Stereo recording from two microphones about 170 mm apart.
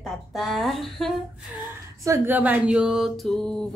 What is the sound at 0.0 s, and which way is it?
Speech, centre (ahead or behind).